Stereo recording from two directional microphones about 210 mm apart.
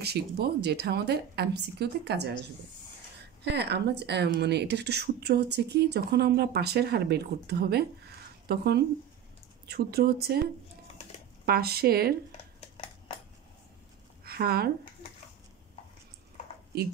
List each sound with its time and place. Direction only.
0.0 s speech: 50° right (ahead or behind)
3.4 s speech: 55° right (ahead or behind)
11.4 s speech: 45° right (ahead or behind)
14.2 s a sound: 50° right (ahead or behind)